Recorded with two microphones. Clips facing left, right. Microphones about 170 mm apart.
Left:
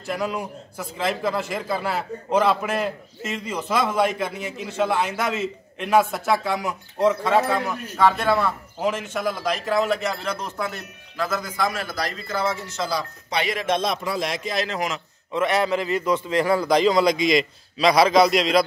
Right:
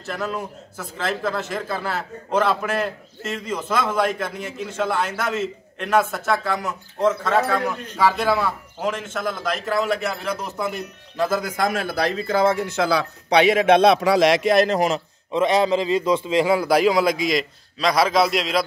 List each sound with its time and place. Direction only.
0.0 s a man's voice: 5° left (ahead or behind)
8.0 s a man's voice: 5° right (ahead or behind)
11.1 s speech: 30° right (ahead or behind)
11.4 s speech: 65° right (ahead or behind)
14.7 s a man's voice: 35° right (ahead or behind)
15.4 s a man's voice: 20° right (ahead or behind); by 18.6 s centre (ahead or behind)